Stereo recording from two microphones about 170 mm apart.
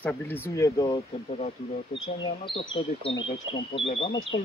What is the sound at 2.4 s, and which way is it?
Speech, 30° left (ahead or behind).